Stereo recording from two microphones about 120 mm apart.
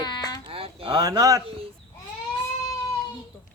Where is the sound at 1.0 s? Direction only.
30° right (ahead or behind).